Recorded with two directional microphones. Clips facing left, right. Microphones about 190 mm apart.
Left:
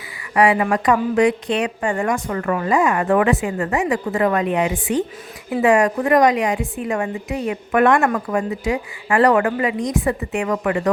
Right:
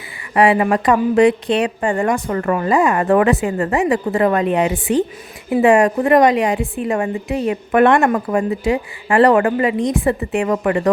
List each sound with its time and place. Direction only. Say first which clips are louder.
0.3 s a woman's voice: right 2 dB; 30° right (ahead or behind)